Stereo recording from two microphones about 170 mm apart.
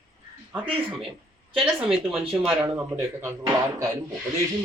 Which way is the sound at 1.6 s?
5° right (ahead or behind).